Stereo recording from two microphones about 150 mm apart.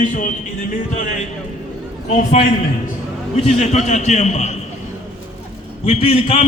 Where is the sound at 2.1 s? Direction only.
60° left (ahead or behind).